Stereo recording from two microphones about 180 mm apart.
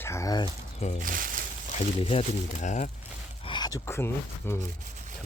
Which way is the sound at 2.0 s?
30° left (ahead or behind).